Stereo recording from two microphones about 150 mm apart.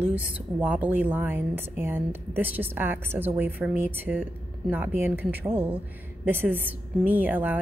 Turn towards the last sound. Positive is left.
turn(degrees=-10)  # may be behind; listen again after turning